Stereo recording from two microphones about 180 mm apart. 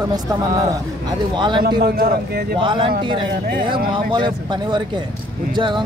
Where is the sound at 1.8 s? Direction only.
55° right (ahead or behind).